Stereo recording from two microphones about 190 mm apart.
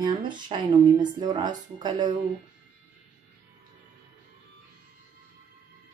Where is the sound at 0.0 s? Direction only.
25° right (ahead or behind).